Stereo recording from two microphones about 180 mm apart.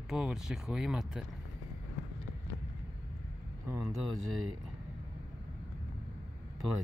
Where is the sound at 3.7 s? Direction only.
20° right (ahead or behind).